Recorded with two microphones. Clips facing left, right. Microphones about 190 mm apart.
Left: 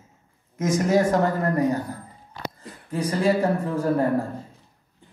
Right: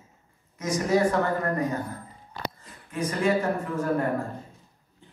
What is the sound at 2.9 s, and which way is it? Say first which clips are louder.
Speech: left 3 dB; 35° left (ahead or behind).